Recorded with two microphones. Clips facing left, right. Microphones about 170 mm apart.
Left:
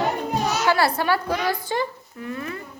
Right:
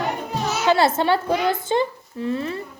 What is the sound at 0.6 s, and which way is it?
A woman's voice, 20° right (ahead or behind).